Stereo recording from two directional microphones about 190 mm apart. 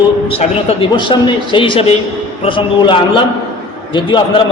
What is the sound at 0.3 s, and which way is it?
A man's voice, 30° left (ahead or behind).